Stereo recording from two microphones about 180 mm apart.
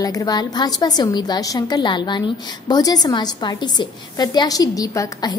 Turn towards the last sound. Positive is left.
turn(degrees=20)  # may be behind; listen again after turning